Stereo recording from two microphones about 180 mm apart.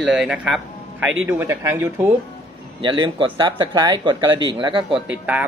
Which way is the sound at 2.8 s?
25° right (ahead or behind).